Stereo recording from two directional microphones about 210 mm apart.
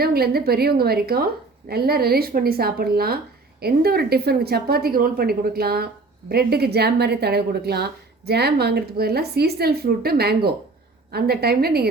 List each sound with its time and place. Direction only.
0.0 s a woman's voice: 45° right (ahead or behind)